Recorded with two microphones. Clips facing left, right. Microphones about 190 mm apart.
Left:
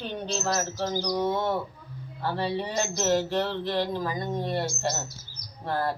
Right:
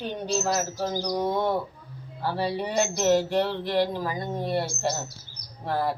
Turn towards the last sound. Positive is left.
turn(degrees=-10)  # may be behind; listen again after turning